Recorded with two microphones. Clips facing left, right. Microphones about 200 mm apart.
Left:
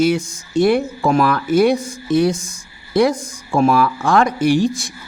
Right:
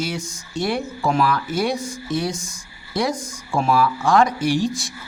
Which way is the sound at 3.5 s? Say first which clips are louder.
Left 4 dB; 55° left (ahead or behind).